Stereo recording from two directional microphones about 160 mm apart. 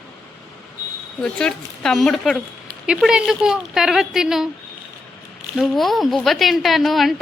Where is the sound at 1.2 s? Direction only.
5° left (ahead or behind).